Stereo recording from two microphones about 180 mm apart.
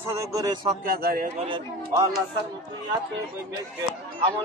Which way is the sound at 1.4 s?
25° right (ahead or behind).